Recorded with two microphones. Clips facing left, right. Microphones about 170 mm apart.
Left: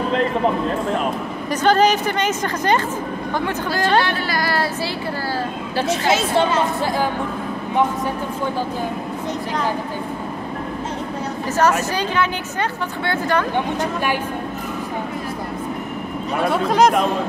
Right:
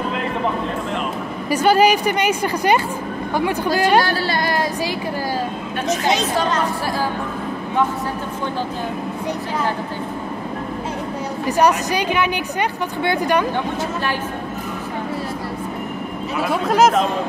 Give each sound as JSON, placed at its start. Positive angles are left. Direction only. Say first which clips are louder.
{"t": 1.5, "sound": "a woman's voice", "louder": "right 1 dB", "side_deg": -10}
{"t": 4.0, "sound": "speech", "louder": "right 2 dB", "side_deg": -35}
{"t": 4.4, "sound": "a sound", "louder": "left 2 dB", "side_deg": -20}
{"t": 11.4, "sound": "a woman's voice", "louder": "right 2 dB", "side_deg": -15}
{"t": 16.4, "sound": "speech", "louder": "even", "side_deg": 0}